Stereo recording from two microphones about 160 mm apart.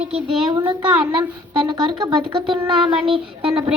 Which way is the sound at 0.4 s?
30° right (ahead or behind).